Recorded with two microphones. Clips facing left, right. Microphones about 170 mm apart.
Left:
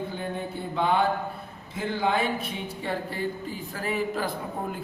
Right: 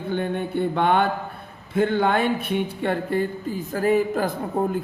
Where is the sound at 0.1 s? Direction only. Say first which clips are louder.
Right 7 dB; 65° right (ahead or behind).